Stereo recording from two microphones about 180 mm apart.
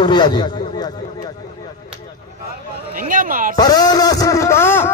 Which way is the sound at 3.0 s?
50° right (ahead or behind).